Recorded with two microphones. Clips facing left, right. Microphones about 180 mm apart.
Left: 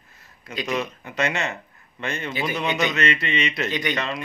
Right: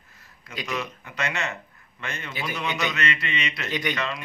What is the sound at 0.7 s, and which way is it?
Speech, 20° left (ahead or behind).